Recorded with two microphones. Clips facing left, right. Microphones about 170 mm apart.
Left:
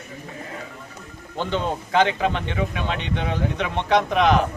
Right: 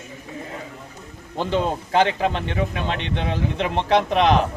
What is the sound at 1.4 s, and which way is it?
Speech, 5° right (ahead or behind).